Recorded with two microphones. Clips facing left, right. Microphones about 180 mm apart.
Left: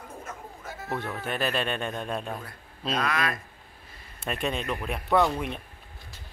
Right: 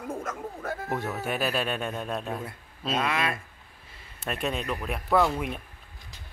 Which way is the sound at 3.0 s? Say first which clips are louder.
Even; 25° right (ahead or behind).